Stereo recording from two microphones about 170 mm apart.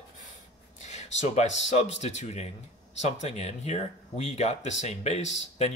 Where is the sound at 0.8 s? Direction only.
40° left (ahead or behind).